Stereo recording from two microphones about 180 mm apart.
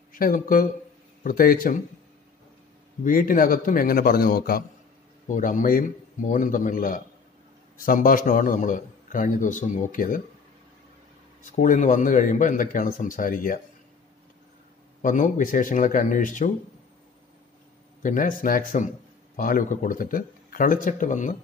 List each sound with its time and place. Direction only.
0.1 s a man's voice: 50° left (ahead or behind)
3.0 s a man's voice: 50° left (ahead or behind)
11.5 s a man's voice: 45° left (ahead or behind)
15.0 s a man's voice: 45° left (ahead or behind)
18.0 s a man's voice: 50° left (ahead or behind)